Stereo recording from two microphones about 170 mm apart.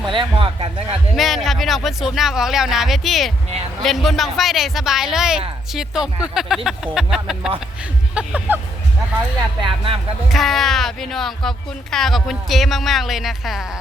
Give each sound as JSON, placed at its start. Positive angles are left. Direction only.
{"t": 0.1, "sound": "speech", "side_deg": -30}
{"t": 1.1, "sound": "speech", "side_deg": 0}
{"t": 9.6, "sound": "speech", "side_deg": -30}
{"t": 10.3, "sound": "speech", "side_deg": 0}